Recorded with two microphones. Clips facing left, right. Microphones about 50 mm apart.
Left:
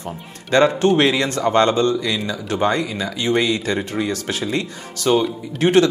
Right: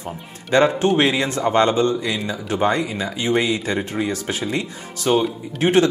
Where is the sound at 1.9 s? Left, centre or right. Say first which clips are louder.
Left 1 dB; right.